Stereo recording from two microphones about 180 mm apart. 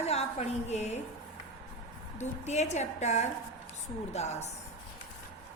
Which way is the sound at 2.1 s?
40° left (ahead or behind).